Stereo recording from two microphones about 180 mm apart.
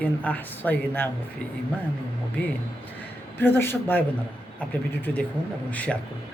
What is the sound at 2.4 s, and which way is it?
A man's voice, 10° left (ahead or behind).